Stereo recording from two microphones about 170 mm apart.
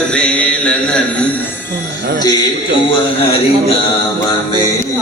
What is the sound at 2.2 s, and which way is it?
Speech, 20° left (ahead or behind).